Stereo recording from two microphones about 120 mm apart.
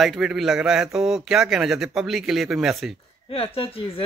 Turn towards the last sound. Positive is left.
turn(degrees=50)  # may be behind; listen again after turning